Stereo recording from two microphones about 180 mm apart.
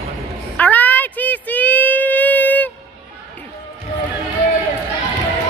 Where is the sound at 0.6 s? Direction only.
10° left (ahead or behind).